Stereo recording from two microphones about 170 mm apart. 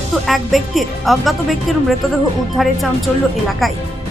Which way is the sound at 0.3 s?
Centre (ahead or behind).